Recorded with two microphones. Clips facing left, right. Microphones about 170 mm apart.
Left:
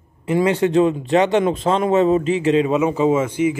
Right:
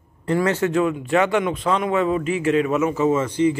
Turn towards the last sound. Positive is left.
turn(degrees=10)  # may be behind; listen again after turning